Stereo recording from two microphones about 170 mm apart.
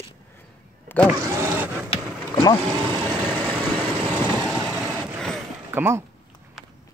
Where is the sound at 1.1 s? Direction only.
15° right (ahead or behind).